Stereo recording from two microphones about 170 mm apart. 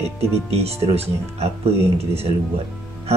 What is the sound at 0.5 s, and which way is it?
Speech, 35° right (ahead or behind).